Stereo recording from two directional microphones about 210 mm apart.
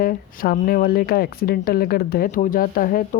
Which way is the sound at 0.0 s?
40° left (ahead or behind).